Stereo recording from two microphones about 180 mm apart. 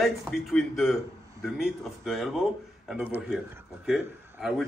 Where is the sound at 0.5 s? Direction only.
Centre (ahead or behind).